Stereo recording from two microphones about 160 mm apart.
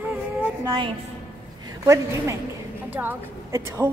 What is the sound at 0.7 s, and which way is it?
Speech, 30° right (ahead or behind).